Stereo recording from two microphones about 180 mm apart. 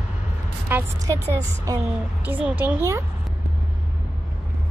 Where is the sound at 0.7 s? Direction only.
20° right (ahead or behind).